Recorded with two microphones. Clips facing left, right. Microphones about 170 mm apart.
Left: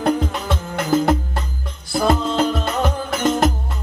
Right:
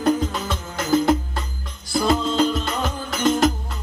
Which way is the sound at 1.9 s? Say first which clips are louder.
Left 2 dB; 55° left (ahead or behind).